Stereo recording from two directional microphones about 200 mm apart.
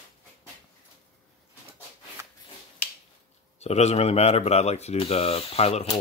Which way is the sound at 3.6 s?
35° left (ahead or behind).